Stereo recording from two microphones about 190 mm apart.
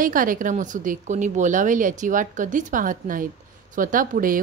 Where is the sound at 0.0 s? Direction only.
45° right (ahead or behind).